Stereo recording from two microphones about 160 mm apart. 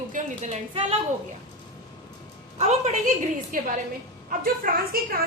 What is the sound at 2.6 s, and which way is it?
Speech, 45° right (ahead or behind).